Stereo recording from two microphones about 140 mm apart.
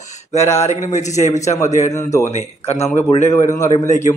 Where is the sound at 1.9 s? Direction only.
20° left (ahead or behind).